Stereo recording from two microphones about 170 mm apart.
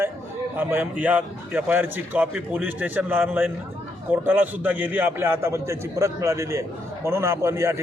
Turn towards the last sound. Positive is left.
turn(degrees=-15)  # may be behind; listen again after turning